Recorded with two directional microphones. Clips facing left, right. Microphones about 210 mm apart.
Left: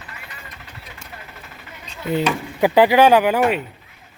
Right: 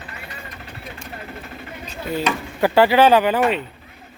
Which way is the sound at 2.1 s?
10° left (ahead or behind).